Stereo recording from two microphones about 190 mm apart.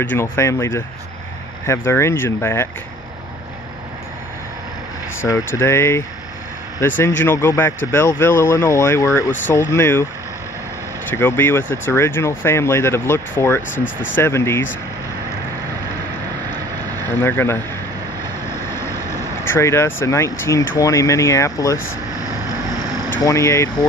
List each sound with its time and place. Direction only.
0.0 s speech: 10° left (ahead or behind)
5.6 s speech: 15° left (ahead or behind)
7.2 s speech: 10° left (ahead or behind)
11.1 s speech: 10° left (ahead or behind)
13.6 s speech: 85° left
14.1 s speech: 15° left (ahead or behind)
17.1 s speech: 10° left (ahead or behind)
23.2 s speech: 15° left (ahead or behind)